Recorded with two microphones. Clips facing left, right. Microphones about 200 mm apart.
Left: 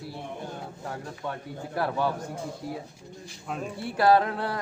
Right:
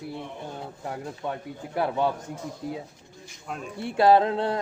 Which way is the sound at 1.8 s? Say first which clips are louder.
Right 2 dB; 20° right (ahead or behind).